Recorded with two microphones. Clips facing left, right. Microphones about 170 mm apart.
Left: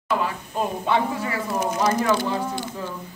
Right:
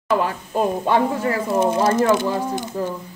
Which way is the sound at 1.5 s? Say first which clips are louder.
Right 4 dB; 30° right (ahead or behind).